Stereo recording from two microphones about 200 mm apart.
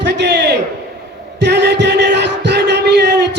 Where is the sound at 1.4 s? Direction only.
60° right (ahead or behind).